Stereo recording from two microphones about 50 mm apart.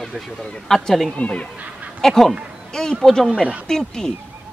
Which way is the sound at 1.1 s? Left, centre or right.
Left.